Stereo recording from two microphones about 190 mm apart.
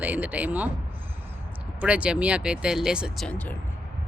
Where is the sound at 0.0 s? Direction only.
10° right (ahead or behind).